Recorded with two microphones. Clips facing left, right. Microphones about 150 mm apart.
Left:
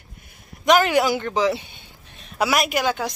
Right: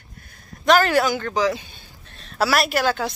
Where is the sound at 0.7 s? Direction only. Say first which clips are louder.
Even; 15° left (ahead or behind).